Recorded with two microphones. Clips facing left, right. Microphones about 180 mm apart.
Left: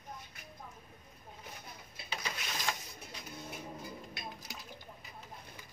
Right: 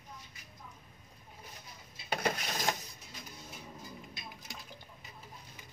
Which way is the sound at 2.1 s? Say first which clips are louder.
Right 8 dB; 55° right (ahead or behind).